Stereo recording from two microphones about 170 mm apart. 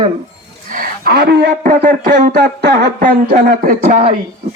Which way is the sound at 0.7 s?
60° right (ahead or behind).